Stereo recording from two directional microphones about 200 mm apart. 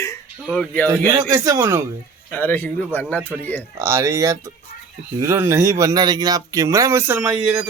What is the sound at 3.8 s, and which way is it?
Speech, 15° right (ahead or behind).